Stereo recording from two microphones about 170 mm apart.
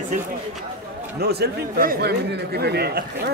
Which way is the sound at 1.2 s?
70° right (ahead or behind).